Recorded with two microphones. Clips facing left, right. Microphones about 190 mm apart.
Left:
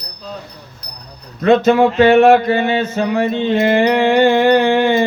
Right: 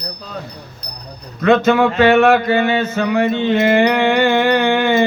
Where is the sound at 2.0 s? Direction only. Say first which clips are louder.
Left 3 dB; 35° left (ahead or behind).